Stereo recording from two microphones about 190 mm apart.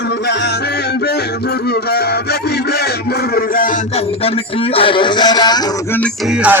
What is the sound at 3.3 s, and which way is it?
Speech, 45° left (ahead or behind).